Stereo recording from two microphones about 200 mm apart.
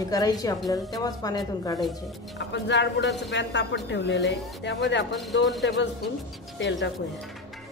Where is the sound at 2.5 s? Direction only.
65° left (ahead or behind).